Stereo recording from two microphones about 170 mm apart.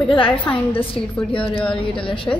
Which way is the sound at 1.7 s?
30° left (ahead or behind).